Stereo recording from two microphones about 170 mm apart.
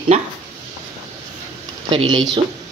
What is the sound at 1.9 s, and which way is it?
Speech, 30° right (ahead or behind).